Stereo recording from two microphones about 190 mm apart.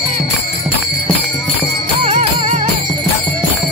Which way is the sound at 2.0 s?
35° right (ahead or behind).